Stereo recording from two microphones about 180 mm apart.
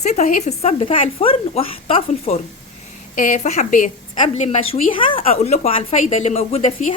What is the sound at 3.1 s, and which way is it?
A woman's voice, 45° left (ahead or behind).